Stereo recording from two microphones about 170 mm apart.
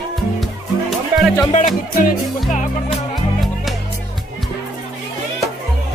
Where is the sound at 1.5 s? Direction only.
45° left (ahead or behind).